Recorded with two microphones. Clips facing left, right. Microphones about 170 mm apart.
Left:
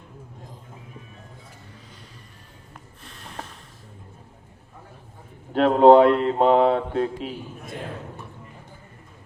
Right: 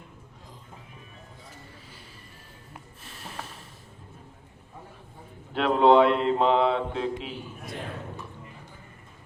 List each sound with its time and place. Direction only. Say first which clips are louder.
3.0 s snort: even; 5° right (ahead or behind)
5.5 s speech: left 5 dB; 45° left (ahead or behind)